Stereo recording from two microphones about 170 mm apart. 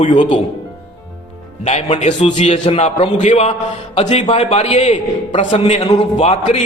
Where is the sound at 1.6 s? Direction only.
40° left (ahead or behind).